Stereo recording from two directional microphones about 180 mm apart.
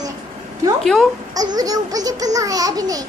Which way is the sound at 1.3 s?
20° right (ahead or behind).